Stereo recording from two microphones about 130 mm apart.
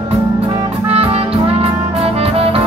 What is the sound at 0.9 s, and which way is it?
Music, 50° right (ahead or behind).